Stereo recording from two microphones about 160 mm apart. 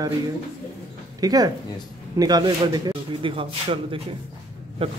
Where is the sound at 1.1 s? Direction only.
25° right (ahead or behind).